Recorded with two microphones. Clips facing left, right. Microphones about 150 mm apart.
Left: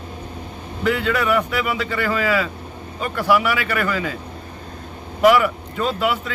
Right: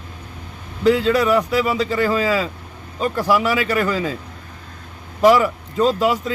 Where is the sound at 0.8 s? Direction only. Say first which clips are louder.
Right 5 dB; 35° right (ahead or behind).